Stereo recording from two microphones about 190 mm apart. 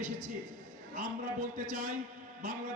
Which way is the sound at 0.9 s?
40° right (ahead or behind).